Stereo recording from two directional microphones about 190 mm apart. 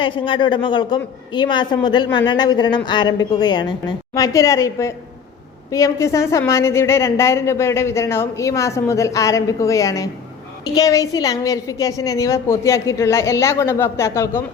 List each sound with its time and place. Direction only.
0.0 s a woman's voice: 25° left (ahead or behind)